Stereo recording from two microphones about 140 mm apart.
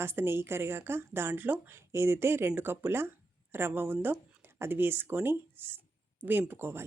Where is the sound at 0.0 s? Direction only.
15° right (ahead or behind).